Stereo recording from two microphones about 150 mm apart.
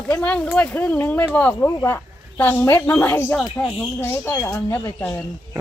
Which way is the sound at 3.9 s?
15° left (ahead or behind).